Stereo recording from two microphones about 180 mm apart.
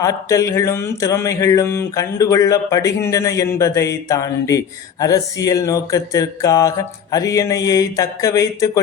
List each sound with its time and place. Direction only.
0.0 s mantra: 20° left (ahead or behind)